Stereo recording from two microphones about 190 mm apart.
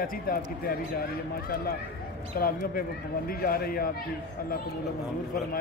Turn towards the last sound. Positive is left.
turn(degrees=50)  # may be behind; listen again after turning